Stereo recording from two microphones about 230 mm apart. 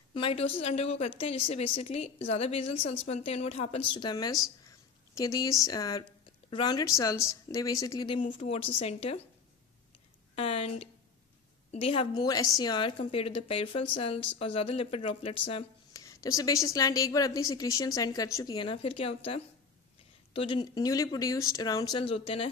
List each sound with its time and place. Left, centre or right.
0.1 s a woman's voice: left
10.3 s a woman's voice: left